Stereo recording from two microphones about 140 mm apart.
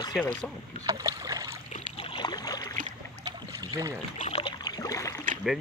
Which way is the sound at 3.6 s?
25° right (ahead or behind).